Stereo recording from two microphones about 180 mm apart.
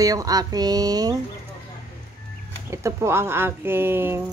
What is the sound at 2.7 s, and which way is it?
Speech, 15° right (ahead or behind).